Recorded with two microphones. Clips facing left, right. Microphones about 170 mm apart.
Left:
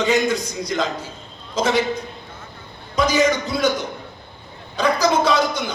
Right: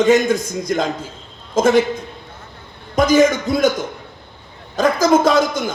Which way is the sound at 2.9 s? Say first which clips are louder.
Right 5 dB; 50° right (ahead or behind).